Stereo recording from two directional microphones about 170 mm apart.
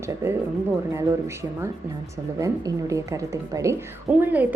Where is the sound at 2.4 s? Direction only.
20° right (ahead or behind).